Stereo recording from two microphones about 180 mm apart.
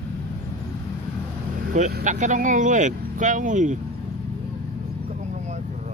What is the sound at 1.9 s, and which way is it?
Speech, 45° right (ahead or behind).